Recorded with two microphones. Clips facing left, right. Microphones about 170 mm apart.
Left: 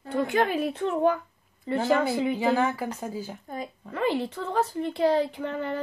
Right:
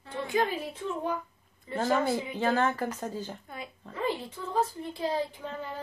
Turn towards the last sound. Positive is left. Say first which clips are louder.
# left 8 dB
turn(degrees=70)  # may be behind; listen again after turning